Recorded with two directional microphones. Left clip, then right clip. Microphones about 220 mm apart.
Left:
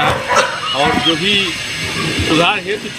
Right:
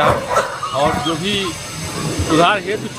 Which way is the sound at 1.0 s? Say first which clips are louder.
Left 6 dB; 10° right (ahead or behind).